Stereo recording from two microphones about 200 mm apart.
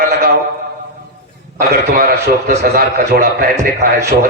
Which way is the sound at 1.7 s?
50° right (ahead or behind).